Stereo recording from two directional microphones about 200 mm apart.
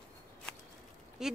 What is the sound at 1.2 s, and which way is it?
Speech, 5° right (ahead or behind).